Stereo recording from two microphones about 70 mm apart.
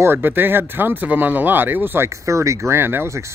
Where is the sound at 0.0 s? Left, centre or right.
Right.